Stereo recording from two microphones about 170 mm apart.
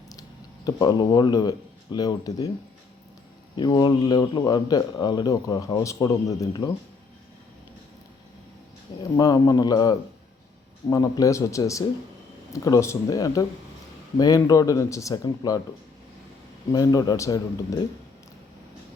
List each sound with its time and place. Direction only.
0.1 s speech: 20° left (ahead or behind)
3.5 s speech: 25° left (ahead or behind)
9.1 s speech: 20° left (ahead or behind)
16.7 s speech: 20° left (ahead or behind)